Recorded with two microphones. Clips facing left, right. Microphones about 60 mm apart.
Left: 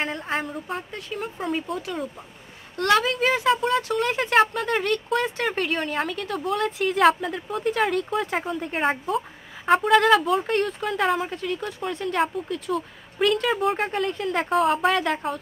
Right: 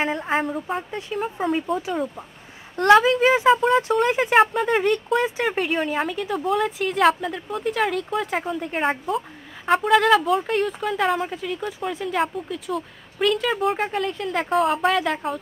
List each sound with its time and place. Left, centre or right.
0.0 s speech: centre
1.8 s speech: centre